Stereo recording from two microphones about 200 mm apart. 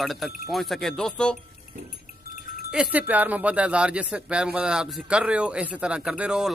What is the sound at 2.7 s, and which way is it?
Speech, 5° right (ahead or behind).